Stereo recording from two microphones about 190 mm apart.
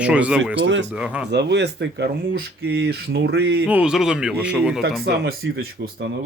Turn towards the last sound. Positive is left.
turn(degrees=-60)  # may be behind; listen again after turning